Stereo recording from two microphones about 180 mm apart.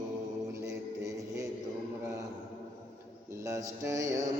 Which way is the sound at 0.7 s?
20° right (ahead or behind).